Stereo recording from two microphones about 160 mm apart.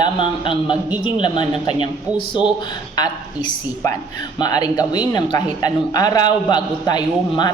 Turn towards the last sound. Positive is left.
turn(degrees=25)  # may be behind; listen again after turning